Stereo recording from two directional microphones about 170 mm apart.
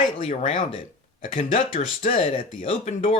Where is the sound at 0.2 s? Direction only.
35° left (ahead or behind).